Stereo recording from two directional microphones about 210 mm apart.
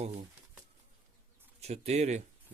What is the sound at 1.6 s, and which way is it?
Speech, 30° right (ahead or behind).